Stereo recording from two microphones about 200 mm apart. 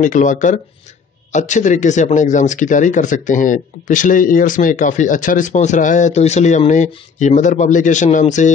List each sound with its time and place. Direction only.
0.0 s a man's voice: 40° left (ahead or behind)